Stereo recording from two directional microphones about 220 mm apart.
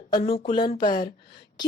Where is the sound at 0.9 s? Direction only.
40° left (ahead or behind).